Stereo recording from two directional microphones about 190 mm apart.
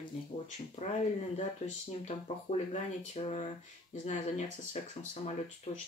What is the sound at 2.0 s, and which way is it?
Speech, 35° left (ahead or behind).